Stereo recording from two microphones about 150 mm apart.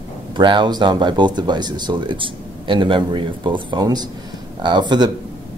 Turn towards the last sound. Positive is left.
turn(degrees=-30)  # may be behind; listen again after turning